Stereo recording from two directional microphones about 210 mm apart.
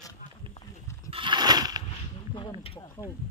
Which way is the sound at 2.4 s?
25° left (ahead or behind).